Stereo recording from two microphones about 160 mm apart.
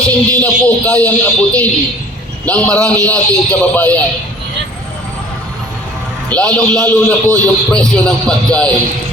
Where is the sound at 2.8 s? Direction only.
20° right (ahead or behind).